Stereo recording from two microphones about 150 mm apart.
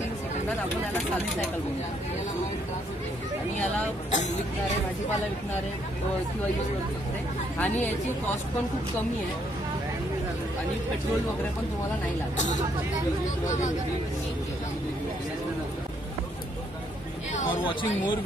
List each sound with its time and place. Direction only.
4.1 s speech: 50° left (ahead or behind)
7.5 s a woman's voice: 10° left (ahead or behind)
17.5 s speech: 35° left (ahead or behind)